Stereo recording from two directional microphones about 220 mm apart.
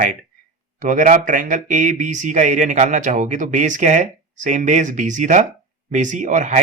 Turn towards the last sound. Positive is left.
turn(degrees=-35)  # may be behind; listen again after turning